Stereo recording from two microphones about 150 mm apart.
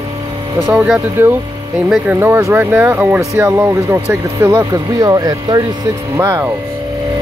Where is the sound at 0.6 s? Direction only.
10° right (ahead or behind).